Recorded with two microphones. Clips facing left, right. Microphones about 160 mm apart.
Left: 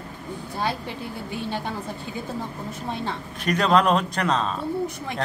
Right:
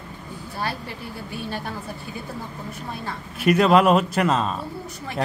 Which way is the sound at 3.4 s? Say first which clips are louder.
Right 4 dB; 5° right (ahead or behind).